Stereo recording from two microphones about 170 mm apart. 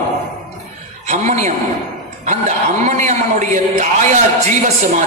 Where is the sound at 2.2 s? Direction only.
45° right (ahead or behind).